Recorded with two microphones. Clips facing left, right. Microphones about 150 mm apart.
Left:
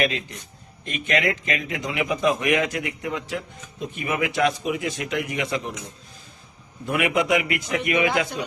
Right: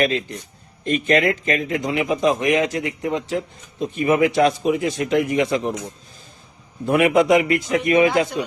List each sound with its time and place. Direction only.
0.0 s speech: 35° right (ahead or behind)
6.8 s speech: 40° right (ahead or behind)